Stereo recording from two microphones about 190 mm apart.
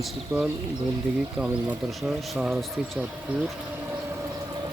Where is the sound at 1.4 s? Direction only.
5° right (ahead or behind).